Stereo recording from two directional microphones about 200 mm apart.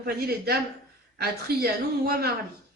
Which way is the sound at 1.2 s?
50° right (ahead or behind).